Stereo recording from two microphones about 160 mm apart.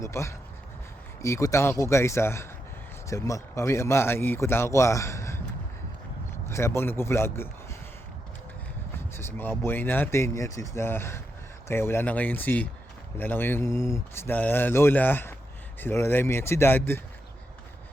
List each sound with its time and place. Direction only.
0.0 s a man's voice: 15° left (ahead or behind)
6.5 s a man's voice: 15° left (ahead or behind)
9.0 s a man's voice: 15° left (ahead or behind)